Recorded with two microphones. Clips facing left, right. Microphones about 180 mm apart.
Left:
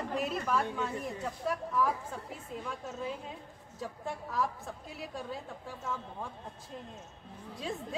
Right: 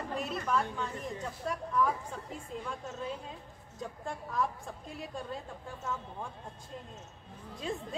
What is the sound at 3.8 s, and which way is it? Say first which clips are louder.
Speech: left 1 dB; centre (ahead or behind).